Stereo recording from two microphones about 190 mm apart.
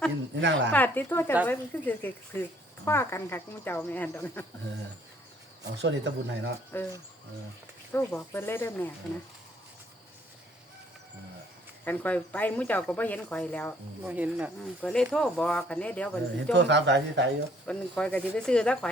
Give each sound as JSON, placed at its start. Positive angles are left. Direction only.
{"t": 0.3, "sound": "speech", "side_deg": -70}
{"t": 0.7, "sound": "speech", "side_deg": 10}
{"t": 5.7, "sound": "speech", "side_deg": -65}
{"t": 6.7, "sound": "speech", "side_deg": 10}
{"t": 7.9, "sound": "speech", "side_deg": 15}
{"t": 11.9, "sound": "speech", "side_deg": 10}
{"t": 14.0, "sound": "speech", "side_deg": -5}
{"t": 14.8, "sound": "speech", "side_deg": 5}
{"t": 16.5, "sound": "speech", "side_deg": -65}
{"t": 17.7, "sound": "speech", "side_deg": 5}